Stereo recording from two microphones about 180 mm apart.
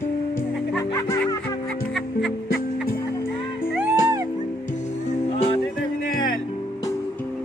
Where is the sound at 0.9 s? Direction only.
20° left (ahead or behind).